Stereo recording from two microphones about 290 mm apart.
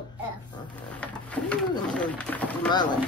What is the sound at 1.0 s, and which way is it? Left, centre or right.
Speech, centre.